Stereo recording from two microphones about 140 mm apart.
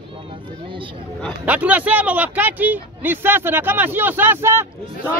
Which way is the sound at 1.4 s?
10° right (ahead or behind).